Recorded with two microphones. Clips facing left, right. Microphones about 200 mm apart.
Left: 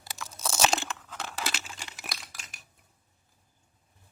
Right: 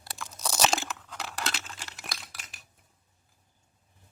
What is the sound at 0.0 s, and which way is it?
Crunch, centre (ahead or behind).